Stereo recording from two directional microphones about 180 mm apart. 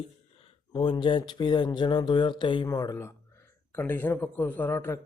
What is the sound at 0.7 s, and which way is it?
A man's voice, 25° left (ahead or behind).